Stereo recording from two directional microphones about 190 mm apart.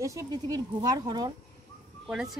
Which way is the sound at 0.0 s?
15° right (ahead or behind).